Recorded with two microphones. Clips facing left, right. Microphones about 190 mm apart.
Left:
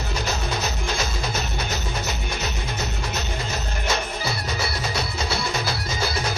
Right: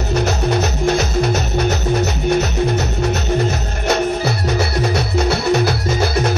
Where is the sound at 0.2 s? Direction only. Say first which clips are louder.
Right 9 dB; 65° right (ahead or behind).